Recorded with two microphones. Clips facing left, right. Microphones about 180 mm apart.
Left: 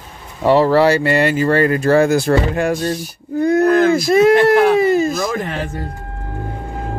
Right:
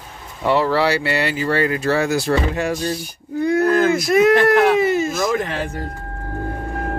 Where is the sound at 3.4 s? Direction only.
45° left (ahead or behind).